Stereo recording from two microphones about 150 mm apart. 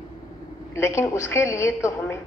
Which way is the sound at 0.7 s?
20° left (ahead or behind).